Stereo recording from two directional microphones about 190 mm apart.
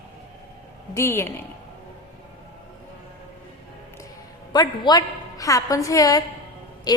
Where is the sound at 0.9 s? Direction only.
15° left (ahead or behind).